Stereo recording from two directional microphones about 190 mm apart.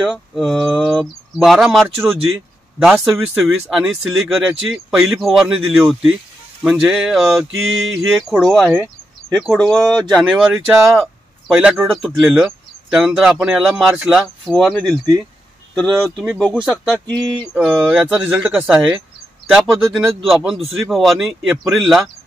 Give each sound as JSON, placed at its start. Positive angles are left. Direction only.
{"t": 0.0, "sound": "speech", "side_deg": 0}
{"t": 17.0, "sound": "a sound", "side_deg": -20}
{"t": 17.6, "sound": "speech", "side_deg": -5}